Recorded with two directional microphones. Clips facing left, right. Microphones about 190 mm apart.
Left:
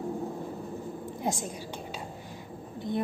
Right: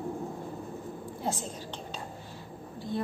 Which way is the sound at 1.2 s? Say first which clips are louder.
Left 2 dB; 15° left (ahead or behind).